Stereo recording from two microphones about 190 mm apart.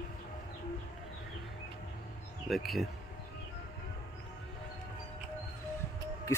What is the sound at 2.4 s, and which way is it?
Speech, centre (ahead or behind).